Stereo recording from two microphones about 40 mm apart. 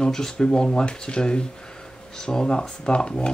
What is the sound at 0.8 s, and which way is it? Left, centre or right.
Sanding, left.